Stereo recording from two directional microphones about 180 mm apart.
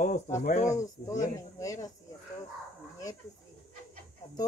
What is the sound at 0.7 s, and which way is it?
Speech, 15° left (ahead or behind).